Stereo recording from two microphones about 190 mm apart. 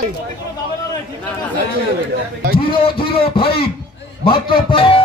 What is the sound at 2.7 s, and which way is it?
A man's voice, 30° left (ahead or behind).